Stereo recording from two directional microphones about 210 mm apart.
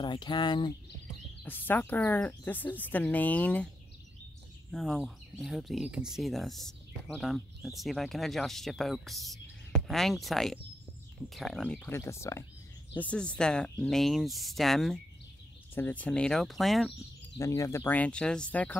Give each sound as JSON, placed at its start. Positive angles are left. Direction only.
{"t": 0.0, "sound": "speech", "side_deg": 20}
{"t": 1.4, "sound": "speech", "side_deg": 10}
{"t": 4.6, "sound": "speech", "side_deg": 0}
{"t": 17.4, "sound": "speech", "side_deg": 15}